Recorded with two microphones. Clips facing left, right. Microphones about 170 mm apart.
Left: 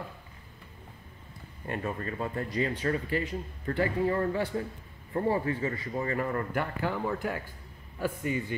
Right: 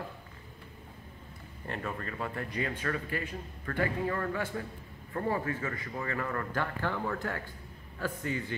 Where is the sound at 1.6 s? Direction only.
15° left (ahead or behind).